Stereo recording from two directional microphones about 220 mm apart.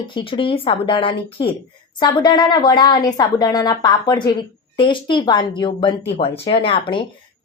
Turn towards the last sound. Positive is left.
turn(degrees=25)  # may be behind; listen again after turning